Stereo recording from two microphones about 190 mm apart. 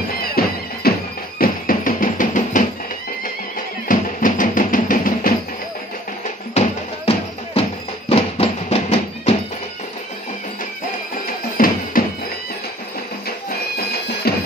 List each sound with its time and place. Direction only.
0.4 s music: 55° left (ahead or behind)
3.8 s music: 45° left (ahead or behind)
8.1 s music: 30° left (ahead or behind)
11.5 s music: 45° left (ahead or behind)
13.5 s music: 55° left (ahead or behind)